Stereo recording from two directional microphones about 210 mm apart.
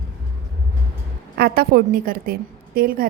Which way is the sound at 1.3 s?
45° right (ahead or behind).